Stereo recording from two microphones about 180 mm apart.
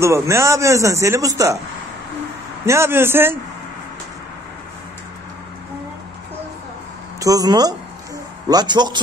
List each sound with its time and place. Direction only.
0.0 s speech: 15° right (ahead or behind)
2.6 s speech: 15° right (ahead or behind)
7.2 s a man's voice: 20° right (ahead or behind)